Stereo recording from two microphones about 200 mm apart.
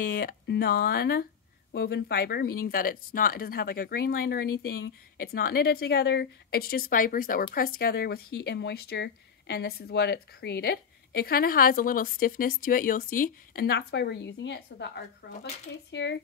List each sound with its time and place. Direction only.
0.0 s speech: 45° left (ahead or behind)